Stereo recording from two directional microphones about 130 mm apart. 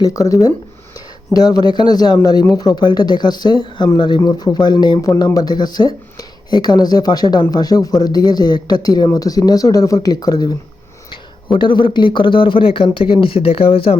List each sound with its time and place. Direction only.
0.0 s speech: 25° left (ahead or behind)
11.5 s speech: 40° left (ahead or behind)